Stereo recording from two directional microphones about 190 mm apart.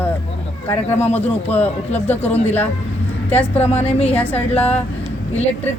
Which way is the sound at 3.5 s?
35° left (ahead or behind).